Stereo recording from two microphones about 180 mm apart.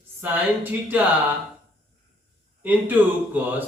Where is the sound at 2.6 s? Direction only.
10° right (ahead or behind).